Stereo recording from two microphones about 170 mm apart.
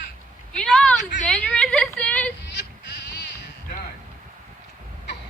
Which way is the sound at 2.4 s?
90° left.